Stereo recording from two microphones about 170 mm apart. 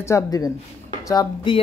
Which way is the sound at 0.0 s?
20° left (ahead or behind).